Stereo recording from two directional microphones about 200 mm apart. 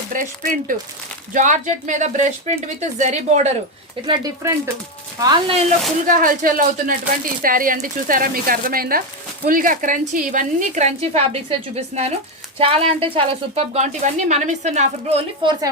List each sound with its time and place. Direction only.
0.1 s a woman's voice: 40° right (ahead or behind)
4.0 s a woman's voice: 20° right (ahead or behind)
6.1 s a woman's voice: 45° right (ahead or behind); by 15.7 s 25° right (ahead or behind)